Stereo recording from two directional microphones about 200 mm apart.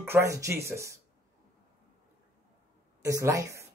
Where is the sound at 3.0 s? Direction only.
15° right (ahead or behind).